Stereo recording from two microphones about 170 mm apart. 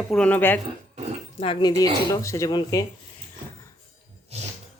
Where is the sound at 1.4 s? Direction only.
30° left (ahead or behind).